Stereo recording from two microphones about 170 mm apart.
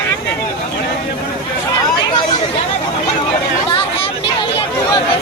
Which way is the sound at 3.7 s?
30° left (ahead or behind).